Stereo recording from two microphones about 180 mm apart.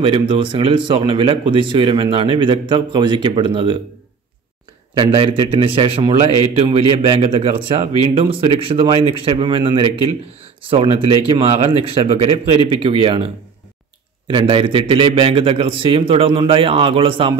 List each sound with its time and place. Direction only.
0.0 s speech: 25° right (ahead or behind)
4.9 s a man's voice: 25° right (ahead or behind)